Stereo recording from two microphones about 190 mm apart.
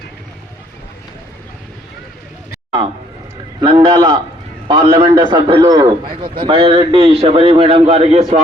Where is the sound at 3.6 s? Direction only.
25° right (ahead or behind).